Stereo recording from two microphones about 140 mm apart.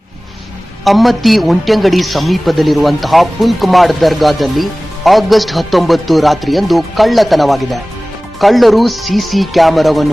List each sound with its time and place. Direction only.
0.9 s a man's voice: centre (ahead or behind)